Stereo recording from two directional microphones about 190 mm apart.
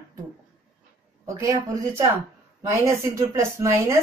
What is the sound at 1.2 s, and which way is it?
Speech, 15° right (ahead or behind).